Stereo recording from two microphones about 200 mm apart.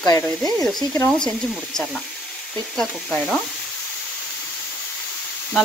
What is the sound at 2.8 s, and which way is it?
Sizzle, 5° left (ahead or behind).